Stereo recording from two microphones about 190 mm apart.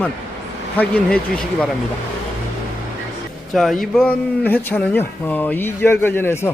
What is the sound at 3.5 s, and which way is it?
Speech, centre (ahead or behind).